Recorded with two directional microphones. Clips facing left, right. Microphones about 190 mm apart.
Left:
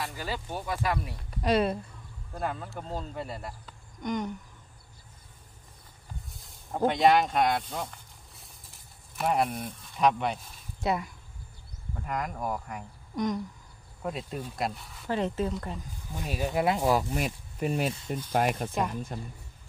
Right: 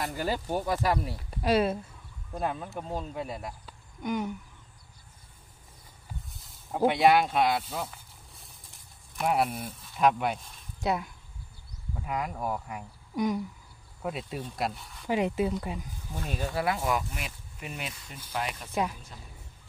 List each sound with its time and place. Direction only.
0.0 s speech: 40° right (ahead or behind)
1.1 s speech: 5° right (ahead or behind)
2.3 s speech: 15° right (ahead or behind)
6.3 s a sound: 5° right (ahead or behind)
9.1 s speech: centre (ahead or behind)
15.0 s speech: 10° right (ahead or behind)
16.4 s speech: 20° left (ahead or behind)
16.8 s speech: 35° left (ahead or behind)
18.3 s a woman's voice: 50° left (ahead or behind)